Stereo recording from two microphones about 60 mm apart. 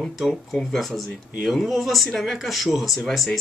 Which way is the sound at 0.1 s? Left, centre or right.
Centre.